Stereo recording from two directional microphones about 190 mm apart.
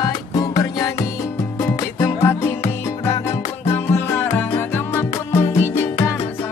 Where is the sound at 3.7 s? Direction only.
10° left (ahead or behind).